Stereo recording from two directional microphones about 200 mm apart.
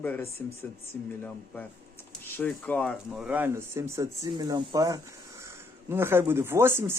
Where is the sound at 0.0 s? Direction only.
10° left (ahead or behind).